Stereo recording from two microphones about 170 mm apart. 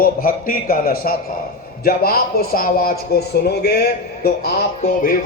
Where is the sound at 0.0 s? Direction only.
55° left (ahead or behind).